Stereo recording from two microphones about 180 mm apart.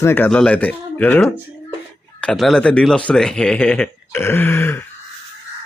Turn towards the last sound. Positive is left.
turn(degrees=10)  # may be behind; listen again after turning